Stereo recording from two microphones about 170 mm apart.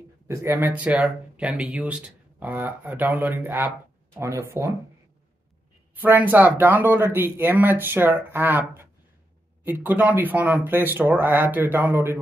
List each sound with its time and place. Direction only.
0.3 s speech: 15° right (ahead or behind)
5.9 s speech: 10° right (ahead or behind)